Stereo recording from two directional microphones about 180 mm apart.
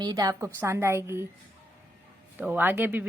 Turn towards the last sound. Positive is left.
turn(degrees=-10)  # may be behind; listen again after turning